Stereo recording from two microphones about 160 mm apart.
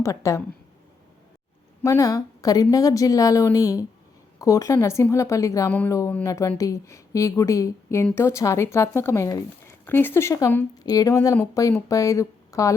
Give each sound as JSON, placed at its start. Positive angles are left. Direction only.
{"t": 0.0, "sound": "a woman's voice", "side_deg": 20}
{"t": 1.8, "sound": "a woman's voice", "side_deg": 20}